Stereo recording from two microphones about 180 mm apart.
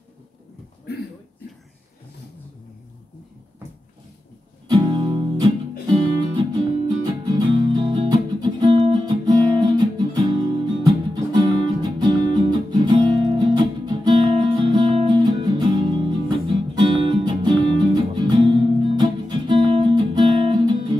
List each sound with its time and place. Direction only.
4.6 s music: 25° right (ahead or behind)